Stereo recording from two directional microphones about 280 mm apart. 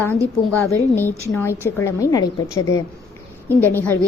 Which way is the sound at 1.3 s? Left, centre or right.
Centre.